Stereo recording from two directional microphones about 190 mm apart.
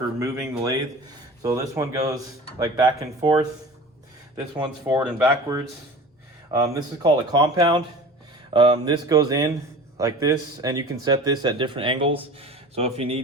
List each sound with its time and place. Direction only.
0.2 s speech: 20° right (ahead or behind)
4.5 s speech: 15° right (ahead or behind); by 13.2 s 30° right (ahead or behind)